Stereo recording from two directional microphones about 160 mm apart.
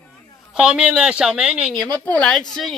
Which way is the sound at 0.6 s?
5° right (ahead or behind).